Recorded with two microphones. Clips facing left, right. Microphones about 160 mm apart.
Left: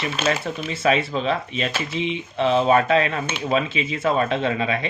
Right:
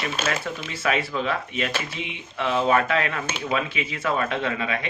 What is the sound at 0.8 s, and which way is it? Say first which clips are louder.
Speech: left 4 dB; 25° left (ahead or behind).